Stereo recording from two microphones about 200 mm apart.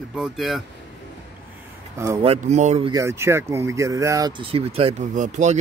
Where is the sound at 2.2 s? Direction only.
35° right (ahead or behind).